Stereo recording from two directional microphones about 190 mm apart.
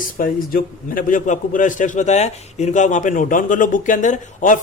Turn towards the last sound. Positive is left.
turn(degrees=40)  # may be behind; listen again after turning